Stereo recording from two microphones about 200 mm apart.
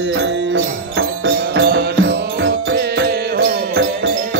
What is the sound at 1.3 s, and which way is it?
Music, 55° right (ahead or behind).